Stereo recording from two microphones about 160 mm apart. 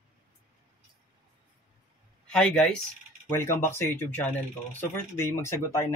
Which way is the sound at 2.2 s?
5° left (ahead or behind).